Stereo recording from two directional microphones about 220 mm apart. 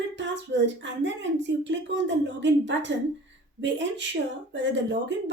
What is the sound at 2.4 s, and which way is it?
Speech, 55° right (ahead or behind).